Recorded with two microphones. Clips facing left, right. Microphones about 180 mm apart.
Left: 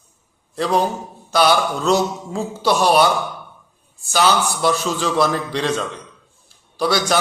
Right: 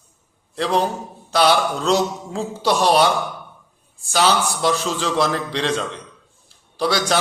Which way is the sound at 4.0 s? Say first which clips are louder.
Left 1 dB; 35° right (ahead or behind).